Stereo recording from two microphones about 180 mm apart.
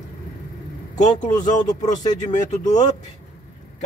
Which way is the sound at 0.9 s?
40° left (ahead or behind).